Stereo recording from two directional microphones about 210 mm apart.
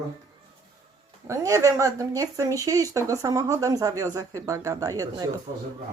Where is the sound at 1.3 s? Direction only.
15° right (ahead or behind).